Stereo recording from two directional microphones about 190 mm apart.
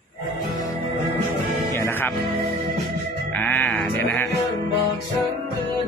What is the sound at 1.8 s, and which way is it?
Music, 10° left (ahead or behind).